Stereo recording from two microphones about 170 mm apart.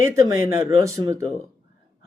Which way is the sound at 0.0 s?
15° right (ahead or behind).